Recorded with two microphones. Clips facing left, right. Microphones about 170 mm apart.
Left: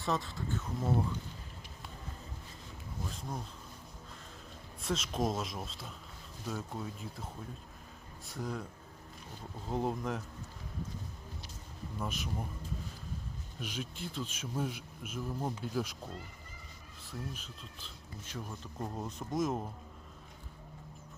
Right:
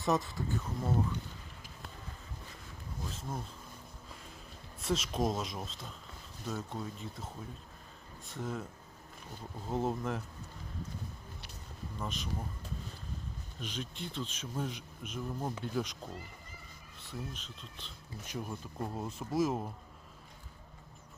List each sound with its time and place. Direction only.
0.0 s speech: 20° right (ahead or behind)
0.8 s speech: 10° left (ahead or behind)
3.1 s speech: centre (ahead or behind)
4.8 s speech: centre (ahead or behind)
9.6 s speech: centre (ahead or behind)
11.9 s speech: 5° left (ahead or behind)
13.6 s speech: 10° left (ahead or behind)
17.0 s speech: centre (ahead or behind)
18.3 s speech: 10° right (ahead or behind)